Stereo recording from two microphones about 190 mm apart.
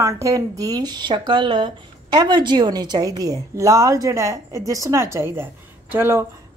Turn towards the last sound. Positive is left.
turn(degrees=-10)  # may be behind; listen again after turning